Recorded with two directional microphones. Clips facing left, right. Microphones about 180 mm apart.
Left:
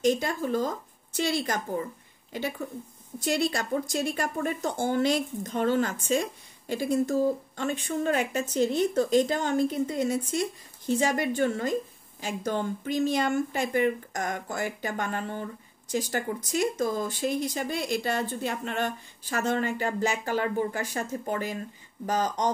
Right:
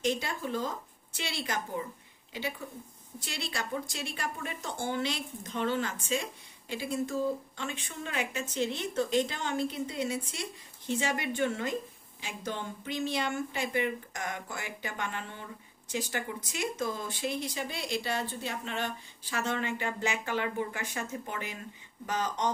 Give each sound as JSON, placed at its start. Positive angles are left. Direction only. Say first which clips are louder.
{"t": 0.0, "sound": "a woman's voice", "louder": "left 6 dB", "side_deg": 45}